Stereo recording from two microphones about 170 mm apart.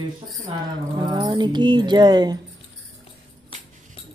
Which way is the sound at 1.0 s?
30° right (ahead or behind).